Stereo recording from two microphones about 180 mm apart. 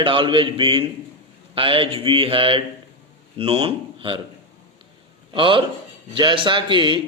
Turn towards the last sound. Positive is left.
turn(degrees=-25)  # may be behind; listen again after turning